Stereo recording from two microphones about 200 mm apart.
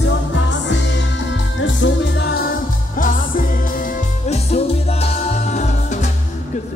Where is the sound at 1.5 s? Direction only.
60° left (ahead or behind).